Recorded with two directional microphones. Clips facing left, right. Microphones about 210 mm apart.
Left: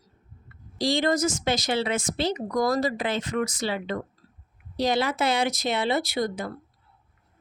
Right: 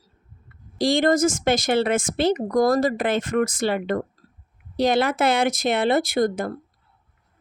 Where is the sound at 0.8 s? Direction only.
50° right (ahead or behind).